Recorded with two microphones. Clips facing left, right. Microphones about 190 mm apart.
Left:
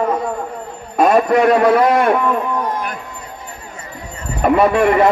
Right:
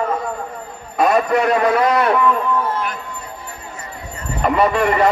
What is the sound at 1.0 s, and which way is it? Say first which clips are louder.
A man's voice: left 3 dB; 45° left (ahead or behind).